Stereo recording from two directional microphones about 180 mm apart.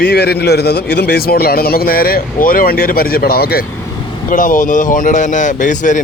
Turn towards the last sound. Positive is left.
turn(degrees=45)  # may be behind; listen again after turning